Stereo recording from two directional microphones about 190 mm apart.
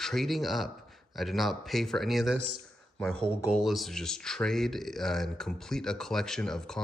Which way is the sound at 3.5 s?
Centre (ahead or behind).